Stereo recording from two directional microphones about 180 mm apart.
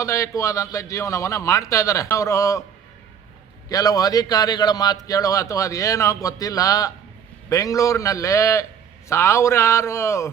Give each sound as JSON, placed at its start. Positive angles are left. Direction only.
{"t": 0.0, "sound": "a man's voice", "side_deg": 15}
{"t": 3.7, "sound": "a man's voice", "side_deg": 20}